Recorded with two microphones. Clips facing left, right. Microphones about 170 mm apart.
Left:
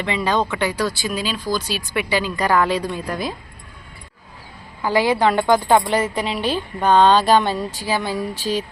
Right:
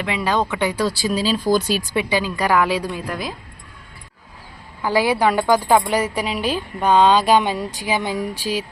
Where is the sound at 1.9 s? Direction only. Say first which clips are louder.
Left 3 dB; 15° right (ahead or behind).